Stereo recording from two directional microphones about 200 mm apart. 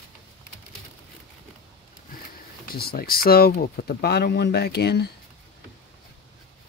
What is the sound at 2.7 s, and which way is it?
Speech, 50° left (ahead or behind).